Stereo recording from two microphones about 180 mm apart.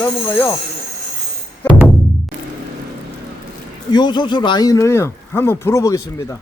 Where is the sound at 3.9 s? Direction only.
25° left (ahead or behind).